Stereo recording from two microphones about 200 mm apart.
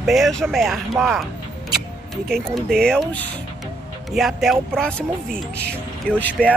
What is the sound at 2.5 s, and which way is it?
Speech, centre (ahead or behind).